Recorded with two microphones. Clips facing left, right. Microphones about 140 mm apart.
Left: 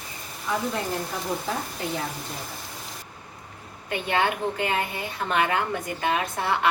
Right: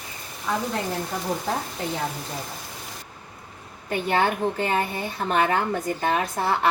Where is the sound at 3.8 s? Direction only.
35° right (ahead or behind).